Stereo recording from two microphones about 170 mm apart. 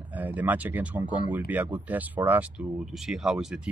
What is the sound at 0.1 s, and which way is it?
Speech, 10° right (ahead or behind).